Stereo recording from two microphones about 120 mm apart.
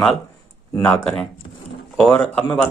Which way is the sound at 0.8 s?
10° left (ahead or behind).